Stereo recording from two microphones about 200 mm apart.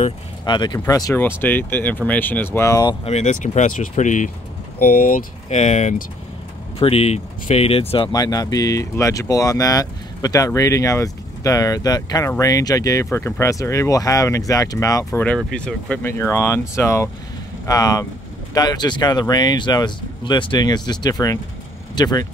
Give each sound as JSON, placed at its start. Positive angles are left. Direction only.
{"t": 0.5, "sound": "speech", "side_deg": 20}
{"t": 3.1, "sound": "speech", "side_deg": 35}